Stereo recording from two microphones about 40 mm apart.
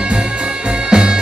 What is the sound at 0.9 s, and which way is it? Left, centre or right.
Music, right.